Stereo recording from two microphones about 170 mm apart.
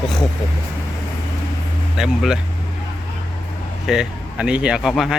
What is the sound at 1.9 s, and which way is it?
Speech, 5° right (ahead or behind).